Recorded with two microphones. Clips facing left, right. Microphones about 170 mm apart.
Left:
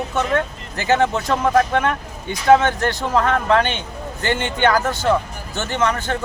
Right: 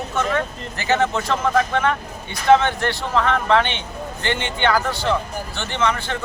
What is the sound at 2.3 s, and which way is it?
Speech, 45° left (ahead or behind).